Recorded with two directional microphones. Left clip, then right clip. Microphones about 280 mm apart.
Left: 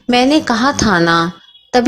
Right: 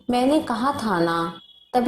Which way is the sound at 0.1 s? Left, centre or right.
Left.